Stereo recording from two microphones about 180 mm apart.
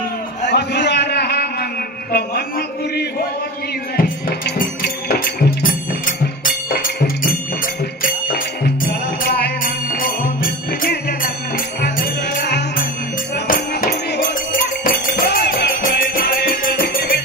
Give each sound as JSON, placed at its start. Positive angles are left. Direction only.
{"t": 0.5, "sound": "a sound", "side_deg": 70}
{"t": 3.9, "sound": "music", "side_deg": 50}
{"t": 13.5, "sound": "music", "side_deg": 50}